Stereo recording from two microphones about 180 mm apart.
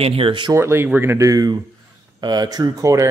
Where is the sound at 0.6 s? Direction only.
15° right (ahead or behind).